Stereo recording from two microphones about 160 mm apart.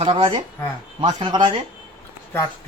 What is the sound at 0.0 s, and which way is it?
Speech, 35° right (ahead or behind).